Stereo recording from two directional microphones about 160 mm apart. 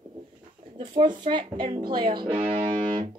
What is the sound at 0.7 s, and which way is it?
A woman's voice, 30° right (ahead or behind).